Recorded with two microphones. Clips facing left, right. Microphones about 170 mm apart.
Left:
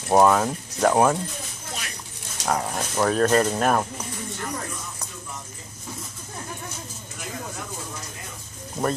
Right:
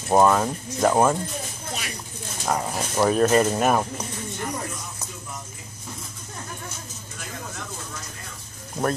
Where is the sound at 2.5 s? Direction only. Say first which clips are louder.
Even; centre (ahead or behind).